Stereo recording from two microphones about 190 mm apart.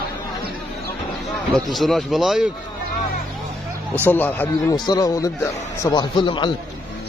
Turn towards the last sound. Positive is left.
turn(degrees=25)  # may be behind; listen again after turning